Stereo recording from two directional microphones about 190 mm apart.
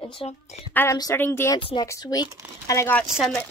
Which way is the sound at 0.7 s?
15° left (ahead or behind).